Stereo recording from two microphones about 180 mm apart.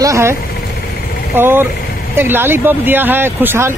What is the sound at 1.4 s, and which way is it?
Speech, 10° right (ahead or behind).